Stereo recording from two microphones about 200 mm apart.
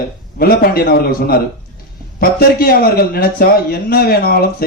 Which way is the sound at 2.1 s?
50° left (ahead or behind).